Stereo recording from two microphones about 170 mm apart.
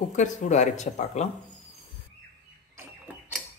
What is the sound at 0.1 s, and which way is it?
Speech, 45° left (ahead or behind).